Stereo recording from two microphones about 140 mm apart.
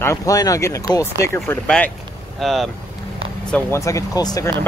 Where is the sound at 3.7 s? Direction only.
20° left (ahead or behind).